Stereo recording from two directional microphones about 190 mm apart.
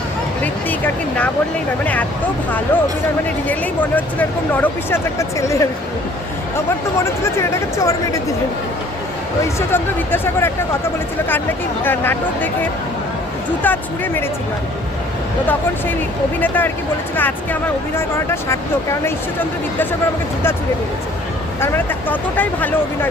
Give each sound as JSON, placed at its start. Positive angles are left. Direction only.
{"t": 1.8, "sound": "speech", "side_deg": 10}
{"t": 3.2, "sound": "speech", "side_deg": 10}
{"t": 7.8, "sound": "speech", "side_deg": 15}
{"t": 9.6, "sound": "speech", "side_deg": 10}
{"t": 13.6, "sound": "speech", "side_deg": 10}
{"t": 16.4, "sound": "speech", "side_deg": 10}
{"t": 21.6, "sound": "speech", "side_deg": 10}